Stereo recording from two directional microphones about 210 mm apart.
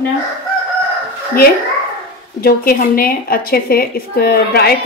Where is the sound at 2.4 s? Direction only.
45° left (ahead or behind).